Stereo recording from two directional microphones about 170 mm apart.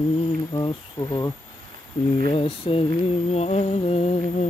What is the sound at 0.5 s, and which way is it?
Speech, 25° left (ahead or behind).